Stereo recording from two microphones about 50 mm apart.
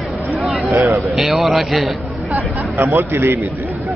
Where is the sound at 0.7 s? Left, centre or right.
Right.